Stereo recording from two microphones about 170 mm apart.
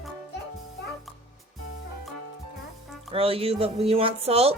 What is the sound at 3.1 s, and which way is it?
Speech, 35° right (ahead or behind).